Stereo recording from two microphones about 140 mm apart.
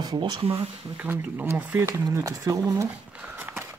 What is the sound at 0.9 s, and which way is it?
Speech, 10° right (ahead or behind).